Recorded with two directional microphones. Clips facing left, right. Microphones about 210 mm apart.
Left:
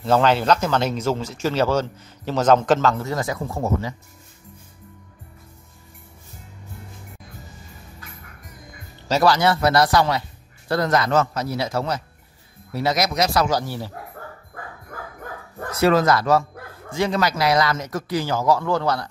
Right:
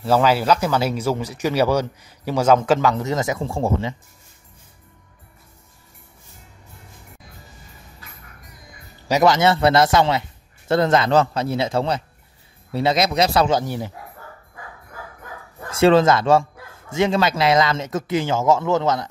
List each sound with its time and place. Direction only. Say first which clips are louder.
0.0 s speech: right 1 dB; 5° right (ahead or behind); by 3.9 s 30° right (ahead or behind)
9.0 s speech: right 2 dB; 20° right (ahead or behind)
15.8 s speech: right 3 dB; 25° right (ahead or behind)